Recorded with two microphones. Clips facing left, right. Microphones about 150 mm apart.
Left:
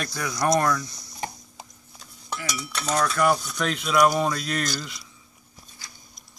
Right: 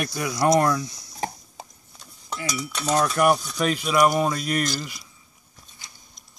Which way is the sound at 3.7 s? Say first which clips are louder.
Even; 5° right (ahead or behind).